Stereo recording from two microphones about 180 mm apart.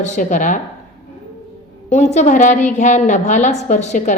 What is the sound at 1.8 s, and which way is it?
A woman's voice, 40° left (ahead or behind).